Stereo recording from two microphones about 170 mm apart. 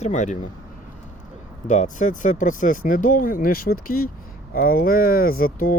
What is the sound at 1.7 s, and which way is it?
Speech, 45° left (ahead or behind).